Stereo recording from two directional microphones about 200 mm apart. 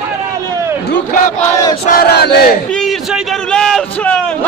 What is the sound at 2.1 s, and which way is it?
Battle cry, 55° left (ahead or behind).